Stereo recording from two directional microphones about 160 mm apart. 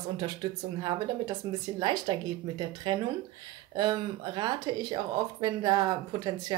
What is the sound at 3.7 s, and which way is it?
Speech, 25° right (ahead or behind).